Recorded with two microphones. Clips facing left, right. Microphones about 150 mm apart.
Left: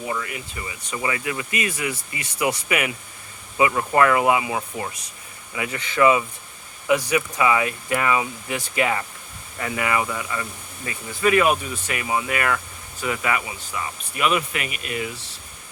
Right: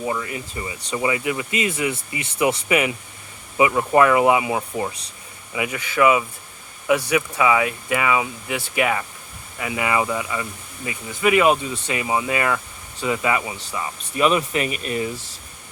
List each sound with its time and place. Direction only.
0.3 s speech: 30° right (ahead or behind)